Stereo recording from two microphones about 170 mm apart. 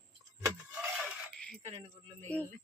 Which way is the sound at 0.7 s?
5° right (ahead or behind).